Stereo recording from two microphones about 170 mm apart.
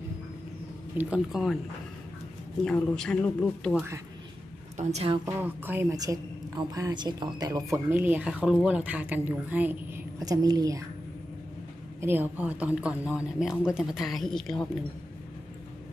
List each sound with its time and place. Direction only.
0.9 s speech: 5° right (ahead or behind)
2.6 s speech: 5° left (ahead or behind)
4.7 s a woman's voice: 35° right (ahead or behind)
5.2 s a woman's voice: 10° right (ahead or behind)
12.0 s speech: 10° right (ahead or behind)